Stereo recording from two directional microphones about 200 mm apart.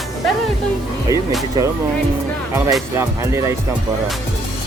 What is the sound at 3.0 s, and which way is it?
Speech, 15° right (ahead or behind).